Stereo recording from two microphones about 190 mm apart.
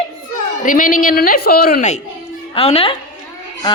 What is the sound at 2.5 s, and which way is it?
Speech, 30° left (ahead or behind).